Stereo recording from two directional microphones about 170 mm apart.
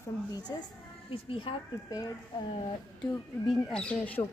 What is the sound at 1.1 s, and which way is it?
Speech, 30° left (ahead or behind).